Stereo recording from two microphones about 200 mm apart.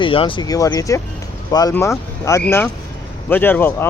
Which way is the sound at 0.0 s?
25° left (ahead or behind).